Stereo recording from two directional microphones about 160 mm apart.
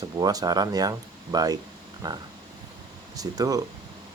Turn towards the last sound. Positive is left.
turn(degrees=-20)  # may be behind; listen again after turning